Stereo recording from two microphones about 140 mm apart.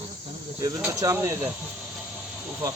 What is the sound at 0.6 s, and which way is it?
Speech, 20° right (ahead or behind).